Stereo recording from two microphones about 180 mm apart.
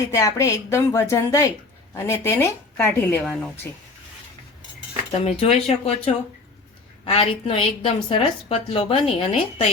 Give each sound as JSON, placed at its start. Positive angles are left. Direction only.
{"t": 0.1, "sound": "speech", "side_deg": 15}
{"t": 5.2, "sound": "a woman's voice", "side_deg": 35}